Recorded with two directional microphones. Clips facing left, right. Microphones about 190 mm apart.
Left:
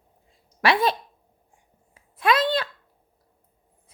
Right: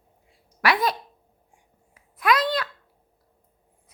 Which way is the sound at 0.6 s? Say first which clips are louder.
Left 2 dB; 25° left (ahead or behind).